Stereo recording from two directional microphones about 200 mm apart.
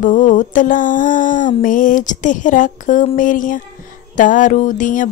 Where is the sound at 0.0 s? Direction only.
40° left (ahead or behind).